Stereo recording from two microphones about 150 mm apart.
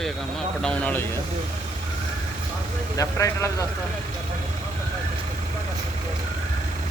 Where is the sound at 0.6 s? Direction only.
10° left (ahead or behind).